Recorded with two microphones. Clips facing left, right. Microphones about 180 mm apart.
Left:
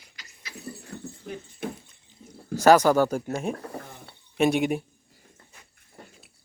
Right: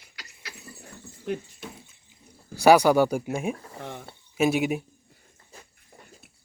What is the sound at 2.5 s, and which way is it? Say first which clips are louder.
Speech: even; 10° right (ahead or behind).